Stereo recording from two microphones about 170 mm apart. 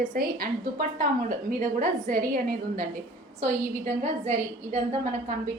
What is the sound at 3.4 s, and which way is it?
A woman's voice, 40° right (ahead or behind).